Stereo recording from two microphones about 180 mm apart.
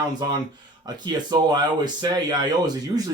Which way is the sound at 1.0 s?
25° right (ahead or behind).